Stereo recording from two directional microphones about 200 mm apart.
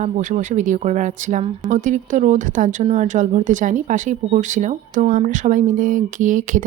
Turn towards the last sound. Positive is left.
turn(degrees=-40)  # may be behind; listen again after turning